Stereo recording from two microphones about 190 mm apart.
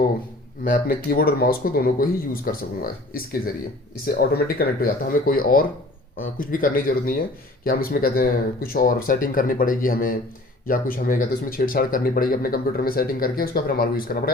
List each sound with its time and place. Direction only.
0.6 s speech: 50° left (ahead or behind)